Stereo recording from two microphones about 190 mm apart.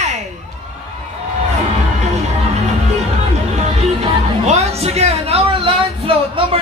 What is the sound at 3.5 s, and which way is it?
Speech, 35° right (ahead or behind).